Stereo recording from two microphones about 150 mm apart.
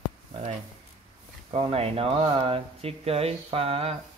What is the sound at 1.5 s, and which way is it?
Speech, 40° right (ahead or behind).